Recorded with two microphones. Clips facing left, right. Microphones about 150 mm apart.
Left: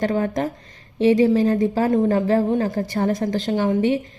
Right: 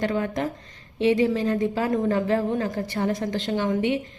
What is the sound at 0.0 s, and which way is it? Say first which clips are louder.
A woman's voice: left 4 dB; 40° left (ahead or behind).